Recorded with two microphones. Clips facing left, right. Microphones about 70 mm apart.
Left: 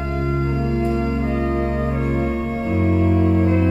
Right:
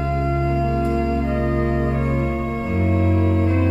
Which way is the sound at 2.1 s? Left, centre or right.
Centre.